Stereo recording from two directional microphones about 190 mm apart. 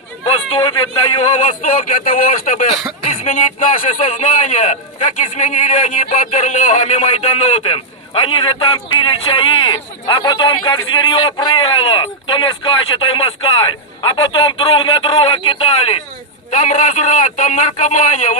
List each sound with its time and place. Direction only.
0.3 s a man's voice: 25° left (ahead or behind)
1.4 s a man's voice: 40° left (ahead or behind)